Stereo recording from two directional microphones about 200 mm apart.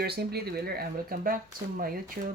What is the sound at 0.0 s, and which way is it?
Speech, 55° right (ahead or behind).